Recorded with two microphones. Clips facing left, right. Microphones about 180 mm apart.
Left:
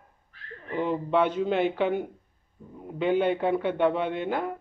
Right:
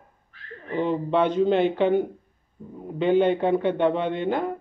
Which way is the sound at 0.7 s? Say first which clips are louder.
Right 2 dB; 5° left (ahead or behind).